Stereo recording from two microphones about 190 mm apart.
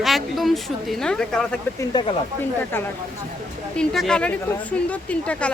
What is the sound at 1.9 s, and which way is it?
Speech, 25° left (ahead or behind).